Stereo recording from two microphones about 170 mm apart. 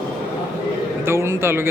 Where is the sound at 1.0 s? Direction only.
15° right (ahead or behind).